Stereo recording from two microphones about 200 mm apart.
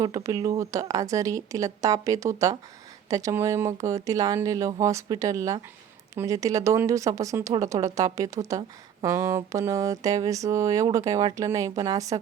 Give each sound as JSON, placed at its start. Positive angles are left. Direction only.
{"t": 0.0, "sound": "speech", "side_deg": -15}